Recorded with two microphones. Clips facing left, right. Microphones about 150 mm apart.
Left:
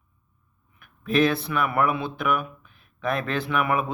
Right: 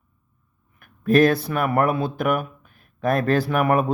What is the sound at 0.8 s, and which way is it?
Speech, 45° right (ahead or behind).